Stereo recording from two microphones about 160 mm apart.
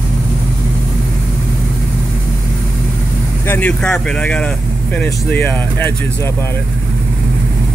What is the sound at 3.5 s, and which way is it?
Speech, 10° left (ahead or behind).